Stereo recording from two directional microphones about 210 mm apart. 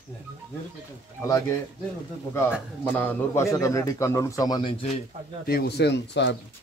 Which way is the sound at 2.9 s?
10° left (ahead or behind).